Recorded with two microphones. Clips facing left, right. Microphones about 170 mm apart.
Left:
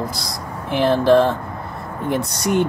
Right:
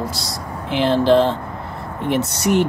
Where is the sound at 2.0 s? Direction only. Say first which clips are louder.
Right 2 dB; 80° right.